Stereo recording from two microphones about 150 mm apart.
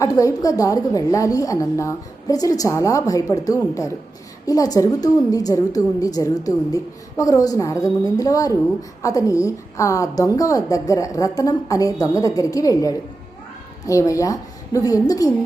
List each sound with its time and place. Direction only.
0.0 s a woman's voice: 20° left (ahead or behind)